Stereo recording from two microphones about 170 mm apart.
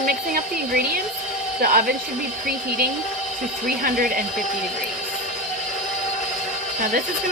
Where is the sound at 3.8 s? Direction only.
55° right (ahead or behind).